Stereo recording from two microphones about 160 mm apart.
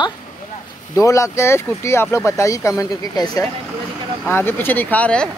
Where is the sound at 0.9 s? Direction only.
20° left (ahead or behind).